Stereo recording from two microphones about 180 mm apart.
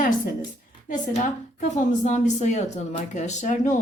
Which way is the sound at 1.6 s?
40° left (ahead or behind).